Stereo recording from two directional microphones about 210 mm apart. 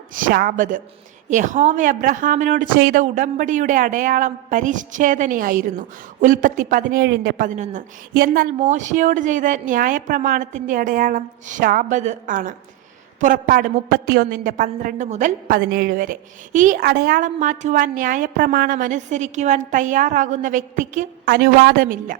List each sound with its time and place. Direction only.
0.1 s speech: 40° right (ahead or behind)